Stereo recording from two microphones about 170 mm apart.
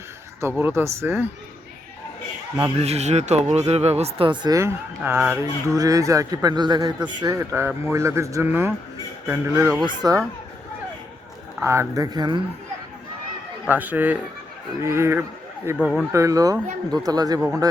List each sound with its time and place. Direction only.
0.4 s speech: 15° right (ahead or behind)
2.6 s speech: 35° right (ahead or behind); by 9.8 s 15° right (ahead or behind)
9.8 s speech: 25° right (ahead or behind)
11.6 s speech: 15° right (ahead or behind)
13.7 s speech: 10° right (ahead or behind)